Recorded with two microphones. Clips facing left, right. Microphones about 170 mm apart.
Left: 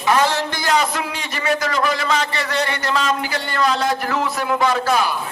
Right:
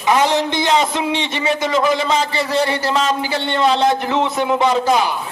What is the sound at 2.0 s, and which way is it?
A man's voice, 30° right (ahead or behind).